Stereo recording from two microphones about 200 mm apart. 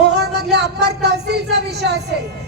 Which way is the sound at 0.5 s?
55° right (ahead or behind).